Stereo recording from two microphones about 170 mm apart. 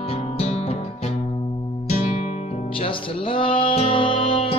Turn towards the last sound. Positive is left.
turn(degrees=30)  # may be behind; listen again after turning